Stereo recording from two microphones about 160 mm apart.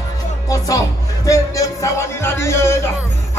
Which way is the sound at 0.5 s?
20° left (ahead or behind).